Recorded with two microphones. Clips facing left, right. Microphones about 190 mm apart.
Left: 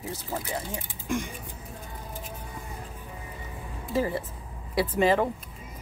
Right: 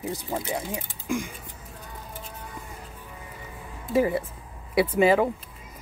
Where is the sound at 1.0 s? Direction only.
Centre (ahead or behind).